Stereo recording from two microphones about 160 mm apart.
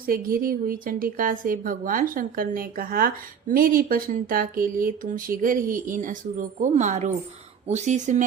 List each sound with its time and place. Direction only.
0.0 s speech: 65° right (ahead or behind); by 8.2 s 50° right (ahead or behind)